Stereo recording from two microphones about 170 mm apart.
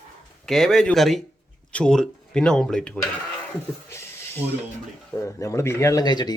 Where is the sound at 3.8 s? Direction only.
15° left (ahead or behind).